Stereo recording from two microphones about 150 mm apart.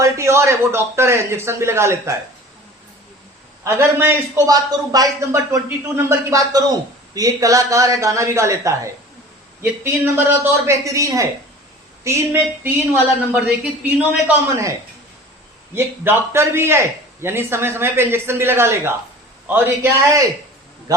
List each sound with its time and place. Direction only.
0.0 s a man's voice: 20° right (ahead or behind)
3.6 s a man's voice: 15° right (ahead or behind)
15.7 s a man's voice: 15° right (ahead or behind)